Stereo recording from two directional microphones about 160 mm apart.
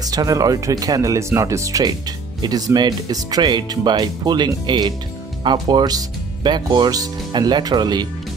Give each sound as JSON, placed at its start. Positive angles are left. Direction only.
{"t": 0.0, "sound": "speech", "side_deg": -25}